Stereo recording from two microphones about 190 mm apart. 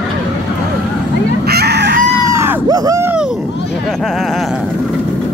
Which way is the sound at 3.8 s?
Centre (ahead or behind).